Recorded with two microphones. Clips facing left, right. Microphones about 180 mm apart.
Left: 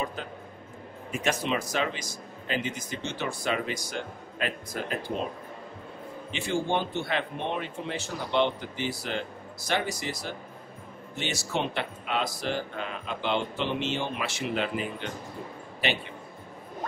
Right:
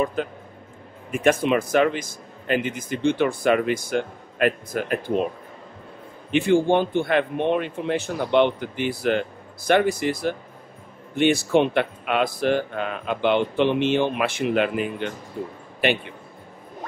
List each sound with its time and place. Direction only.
0.0 s a man's voice: 55° right (ahead or behind)
6.3 s a man's voice: 55° right (ahead or behind)